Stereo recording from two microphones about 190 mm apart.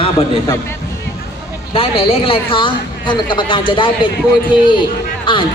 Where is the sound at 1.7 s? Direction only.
30° left (ahead or behind).